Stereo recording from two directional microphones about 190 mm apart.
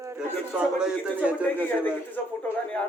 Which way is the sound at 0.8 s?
5° right (ahead or behind).